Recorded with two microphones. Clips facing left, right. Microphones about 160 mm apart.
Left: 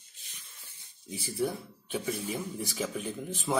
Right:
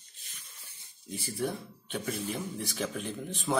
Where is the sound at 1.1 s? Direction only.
Centre (ahead or behind).